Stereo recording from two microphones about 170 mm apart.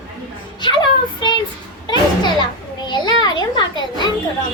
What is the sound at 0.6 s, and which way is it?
Speech, 25° left (ahead or behind).